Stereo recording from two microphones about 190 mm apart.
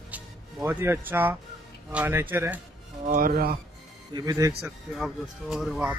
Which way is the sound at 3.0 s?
45° right (ahead or behind).